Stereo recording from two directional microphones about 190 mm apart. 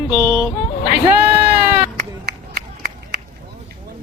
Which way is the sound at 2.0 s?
50° right (ahead or behind).